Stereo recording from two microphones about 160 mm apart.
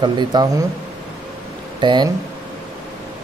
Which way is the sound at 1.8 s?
30° right (ahead or behind).